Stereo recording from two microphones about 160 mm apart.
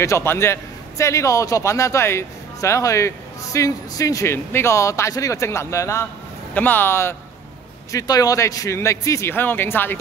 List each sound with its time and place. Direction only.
0.0 s a man's voice: 15° left (ahead or behind)